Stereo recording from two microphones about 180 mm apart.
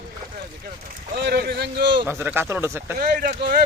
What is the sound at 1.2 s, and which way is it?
Boat, 60° right (ahead or behind).